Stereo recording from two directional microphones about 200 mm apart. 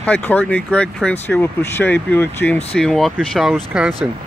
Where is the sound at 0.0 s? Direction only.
10° left (ahead or behind).